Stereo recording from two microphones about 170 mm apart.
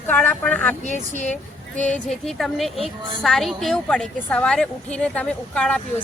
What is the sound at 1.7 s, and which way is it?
A woman's voice, 5° left (ahead or behind).